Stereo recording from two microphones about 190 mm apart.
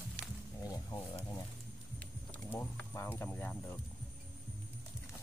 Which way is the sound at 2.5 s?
15° left (ahead or behind).